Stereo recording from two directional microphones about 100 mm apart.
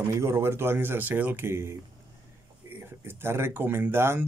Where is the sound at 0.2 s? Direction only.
25° right (ahead or behind).